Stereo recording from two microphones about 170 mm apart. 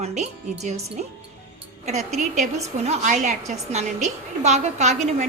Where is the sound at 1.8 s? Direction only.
40° right (ahead or behind).